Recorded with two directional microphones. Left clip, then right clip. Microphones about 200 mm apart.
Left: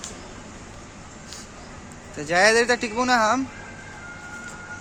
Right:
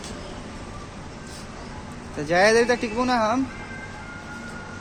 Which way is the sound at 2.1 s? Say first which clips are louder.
Even; 10° left (ahead or behind).